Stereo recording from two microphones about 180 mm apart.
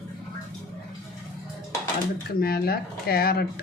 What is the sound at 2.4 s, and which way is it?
Speech, 60° left (ahead or behind).